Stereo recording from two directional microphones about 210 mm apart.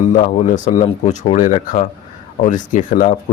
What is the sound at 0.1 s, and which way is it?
Speech, 35° left (ahead or behind).